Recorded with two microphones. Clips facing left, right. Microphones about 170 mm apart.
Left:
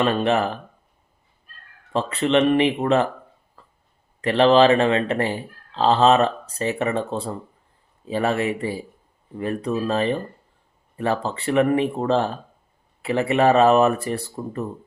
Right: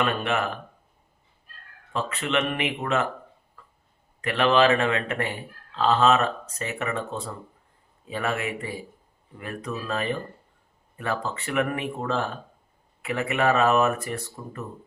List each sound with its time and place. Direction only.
0.0 s speech: 30° left (ahead or behind)
1.9 s speech: 35° left (ahead or behind)
3.6 s hiccup: 30° left (ahead or behind)
4.2 s speech: 30° left (ahead or behind)